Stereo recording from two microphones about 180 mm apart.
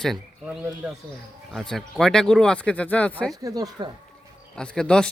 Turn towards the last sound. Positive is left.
turn(degrees=5)  # may be behind; listen again after turning